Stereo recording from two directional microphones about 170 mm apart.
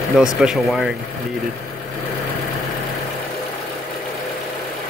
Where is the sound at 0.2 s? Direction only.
5° right (ahead or behind).